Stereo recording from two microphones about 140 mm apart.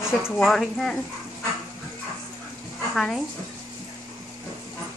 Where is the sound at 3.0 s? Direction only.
5° left (ahead or behind).